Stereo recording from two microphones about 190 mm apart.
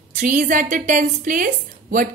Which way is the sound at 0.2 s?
45° right (ahead or behind).